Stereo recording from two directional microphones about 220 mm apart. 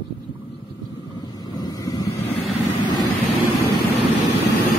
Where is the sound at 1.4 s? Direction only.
20° left (ahead or behind).